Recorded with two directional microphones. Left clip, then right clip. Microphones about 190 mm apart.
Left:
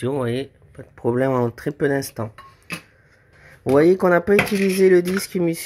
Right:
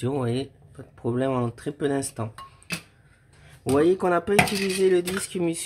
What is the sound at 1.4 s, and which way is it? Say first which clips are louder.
Speech: left 7 dB; 20° left (ahead or behind).